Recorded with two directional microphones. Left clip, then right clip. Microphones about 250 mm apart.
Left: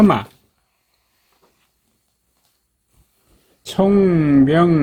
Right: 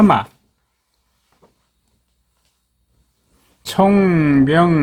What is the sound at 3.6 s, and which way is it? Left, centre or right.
Speech, centre.